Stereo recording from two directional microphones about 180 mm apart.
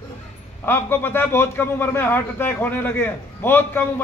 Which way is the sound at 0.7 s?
10° left (ahead or behind).